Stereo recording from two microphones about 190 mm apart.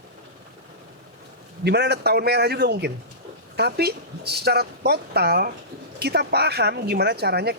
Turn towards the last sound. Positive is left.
turn(degrees=-60)  # may be behind; listen again after turning